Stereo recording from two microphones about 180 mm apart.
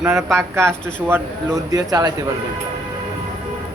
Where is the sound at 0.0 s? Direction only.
5° right (ahead or behind).